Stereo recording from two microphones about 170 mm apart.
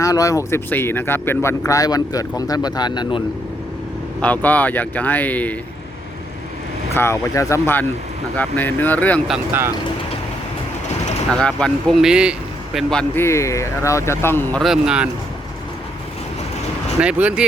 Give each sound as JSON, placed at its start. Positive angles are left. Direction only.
{"t": 0.0, "sound": "speech", "side_deg": 20}
{"t": 4.2, "sound": "speech", "side_deg": 10}
{"t": 6.9, "sound": "speech", "side_deg": 15}
{"t": 9.3, "sound": "speech", "side_deg": -15}
{"t": 11.3, "sound": "speech", "side_deg": 5}
{"t": 14.6, "sound": "speech", "side_deg": -5}
{"t": 17.0, "sound": "speech", "side_deg": -5}